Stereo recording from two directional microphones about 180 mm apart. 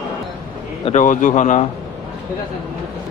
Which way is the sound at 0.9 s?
45° left (ahead or behind).